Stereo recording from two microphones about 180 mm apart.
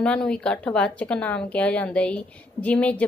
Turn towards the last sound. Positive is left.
turn(degrees=10)  # may be behind; listen again after turning